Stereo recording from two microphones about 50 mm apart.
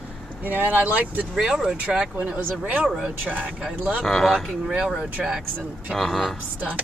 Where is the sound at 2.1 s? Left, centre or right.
Right.